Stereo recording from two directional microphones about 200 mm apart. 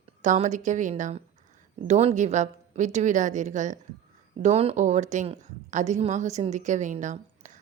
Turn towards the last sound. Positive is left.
turn(degrees=-35)  # may be behind; listen again after turning